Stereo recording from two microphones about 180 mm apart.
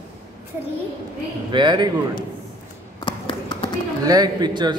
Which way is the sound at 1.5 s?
25° right (ahead or behind).